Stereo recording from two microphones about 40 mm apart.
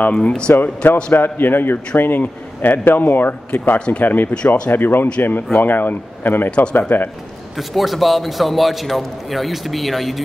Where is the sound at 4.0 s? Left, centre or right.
Left.